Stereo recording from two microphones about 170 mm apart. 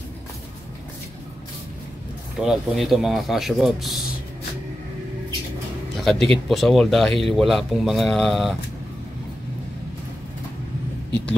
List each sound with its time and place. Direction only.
2.3 s speech: centre (ahead or behind)
5.9 s music: centre (ahead or behind)
6.3 s speech: centre (ahead or behind)